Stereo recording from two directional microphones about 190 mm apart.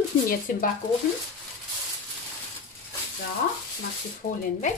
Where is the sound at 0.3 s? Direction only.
45° left (ahead or behind).